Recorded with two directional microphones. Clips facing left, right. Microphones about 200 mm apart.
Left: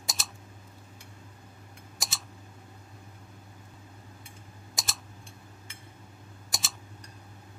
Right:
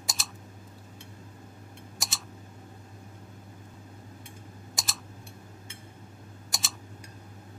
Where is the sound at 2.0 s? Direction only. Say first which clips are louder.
Even; centre (ahead or behind).